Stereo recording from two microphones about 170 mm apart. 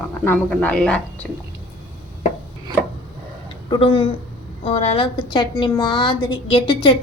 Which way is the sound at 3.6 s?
30° left (ahead or behind).